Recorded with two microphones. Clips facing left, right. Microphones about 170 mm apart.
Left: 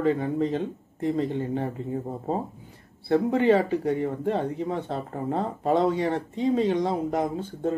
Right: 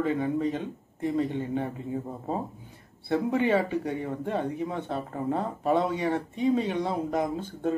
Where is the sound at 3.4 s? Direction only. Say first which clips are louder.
Left 4 dB; 30° left (ahead or behind).